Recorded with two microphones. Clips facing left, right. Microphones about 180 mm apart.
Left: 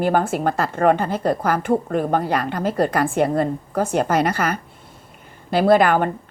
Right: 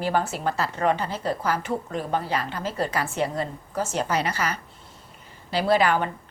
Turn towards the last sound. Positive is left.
turn(degrees=50)  # may be behind; listen again after turning